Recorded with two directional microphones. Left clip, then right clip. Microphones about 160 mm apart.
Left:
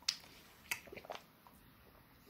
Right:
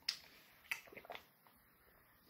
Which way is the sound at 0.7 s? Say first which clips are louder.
Left 2 dB; 20° left (ahead or behind).